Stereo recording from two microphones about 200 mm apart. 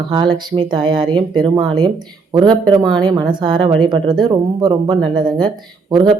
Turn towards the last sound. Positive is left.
turn(degrees=-20)  # may be behind; listen again after turning